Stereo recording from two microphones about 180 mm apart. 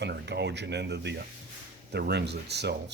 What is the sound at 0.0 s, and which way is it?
Speech, 70° right (ahead or behind).